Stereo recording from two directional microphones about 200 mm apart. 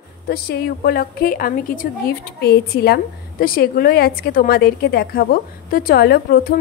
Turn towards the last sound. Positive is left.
turn(degrees=50)  # may be behind; listen again after turning